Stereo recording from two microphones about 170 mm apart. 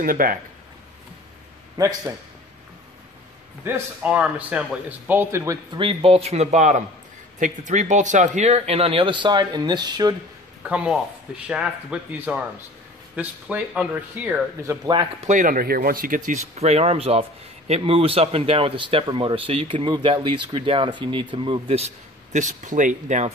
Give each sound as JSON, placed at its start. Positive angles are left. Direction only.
{"t": 0.0, "sound": "speech", "side_deg": -55}
{"t": 3.6, "sound": "speech", "side_deg": -10}
{"t": 5.8, "sound": "speech", "side_deg": -35}
{"t": 10.6, "sound": "speech", "side_deg": -5}
{"t": 15.1, "sound": "speech", "side_deg": -45}
{"t": 16.3, "sound": "speech", "side_deg": -40}